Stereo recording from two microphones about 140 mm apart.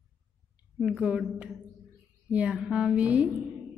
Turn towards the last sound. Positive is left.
turn(degrees=-10)  # may be behind; listen again after turning